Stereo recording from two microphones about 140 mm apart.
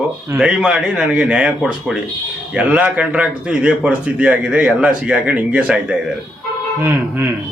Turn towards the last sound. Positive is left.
turn(degrees=-20)  # may be behind; listen again after turning